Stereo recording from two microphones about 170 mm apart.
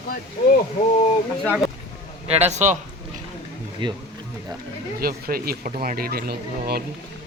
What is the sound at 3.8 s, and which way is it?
Speech, 30° right (ahead or behind).